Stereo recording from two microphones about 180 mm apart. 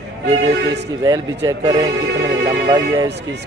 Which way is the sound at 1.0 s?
20° right (ahead or behind).